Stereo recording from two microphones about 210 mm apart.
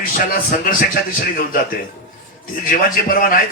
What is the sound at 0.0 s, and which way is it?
A man's voice, 45° left (ahead or behind).